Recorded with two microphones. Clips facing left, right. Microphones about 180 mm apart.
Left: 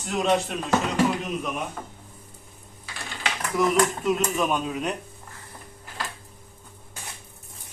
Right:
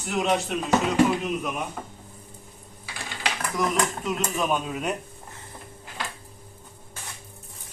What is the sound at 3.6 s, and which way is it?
A man's voice, centre (ahead or behind).